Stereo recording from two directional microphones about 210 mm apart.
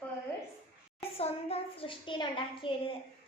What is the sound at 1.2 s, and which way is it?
A child's voice, 30° left (ahead or behind).